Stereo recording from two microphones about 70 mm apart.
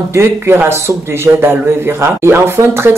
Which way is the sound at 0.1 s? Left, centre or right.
Right.